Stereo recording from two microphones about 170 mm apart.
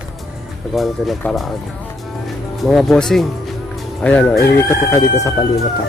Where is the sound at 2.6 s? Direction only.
Centre (ahead or behind); by 5.0 s 15° left (ahead or behind).